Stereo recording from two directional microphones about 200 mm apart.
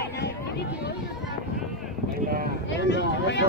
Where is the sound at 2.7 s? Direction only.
60° left (ahead or behind).